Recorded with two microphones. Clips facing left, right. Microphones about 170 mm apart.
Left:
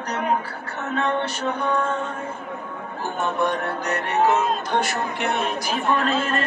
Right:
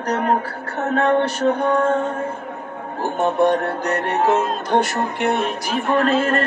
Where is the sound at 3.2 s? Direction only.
35° right (ahead or behind).